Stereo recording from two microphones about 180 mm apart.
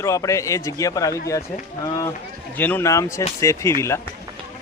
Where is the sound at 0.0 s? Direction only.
15° left (ahead or behind).